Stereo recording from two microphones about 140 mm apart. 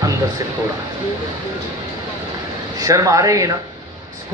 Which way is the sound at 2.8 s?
25° right (ahead or behind).